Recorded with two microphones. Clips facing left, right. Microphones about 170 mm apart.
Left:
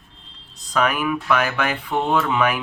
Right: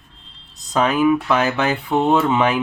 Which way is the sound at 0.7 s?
25° right (ahead or behind).